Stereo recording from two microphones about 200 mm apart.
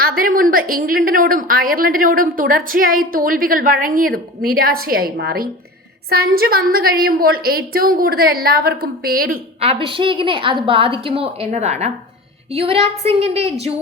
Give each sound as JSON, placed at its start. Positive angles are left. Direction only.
{"t": 0.0, "sound": "a woman's voice", "side_deg": -45}
{"t": 9.6, "sound": "a woman's voice", "side_deg": -30}